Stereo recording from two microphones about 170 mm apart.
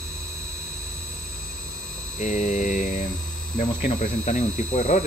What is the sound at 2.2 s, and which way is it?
Speech, 45° left (ahead or behind).